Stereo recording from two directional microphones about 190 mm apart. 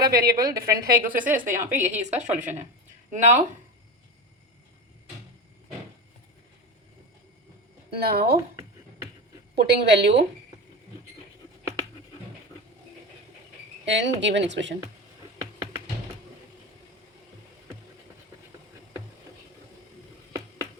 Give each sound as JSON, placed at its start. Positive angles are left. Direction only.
{"t": 0.0, "sound": "a woman's voice", "side_deg": -50}
{"t": 1.5, "sound": "a woman's voice", "side_deg": -10}
{"t": 1.9, "sound": "a woman's voice", "side_deg": -35}
{"t": 7.9, "sound": "a woman's voice", "side_deg": -55}
{"t": 9.6, "sound": "a woman's voice", "side_deg": -60}
{"t": 13.8, "sound": "a woman's voice", "side_deg": -70}